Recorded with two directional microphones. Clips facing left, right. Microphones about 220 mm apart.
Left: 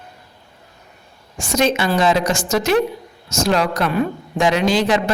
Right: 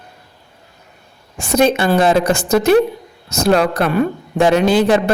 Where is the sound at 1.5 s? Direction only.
55° right (ahead or behind).